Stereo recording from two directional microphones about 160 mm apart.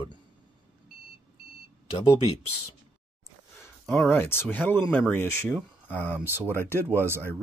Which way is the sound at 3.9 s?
15° left (ahead or behind).